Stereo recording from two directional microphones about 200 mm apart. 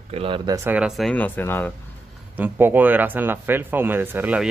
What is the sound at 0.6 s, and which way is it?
Speech, 10° right (ahead or behind).